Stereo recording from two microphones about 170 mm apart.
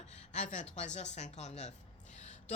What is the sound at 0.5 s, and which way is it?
A woman's voice, 45° left (ahead or behind).